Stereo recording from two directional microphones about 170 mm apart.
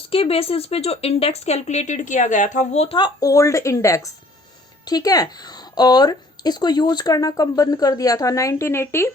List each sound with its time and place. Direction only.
0.1 s speech: 35° left (ahead or behind); by 9.0 s 15° left (ahead or behind)